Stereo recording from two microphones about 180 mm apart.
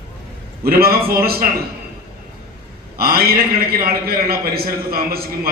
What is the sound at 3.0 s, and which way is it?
A man's voice, 55° right (ahead or behind).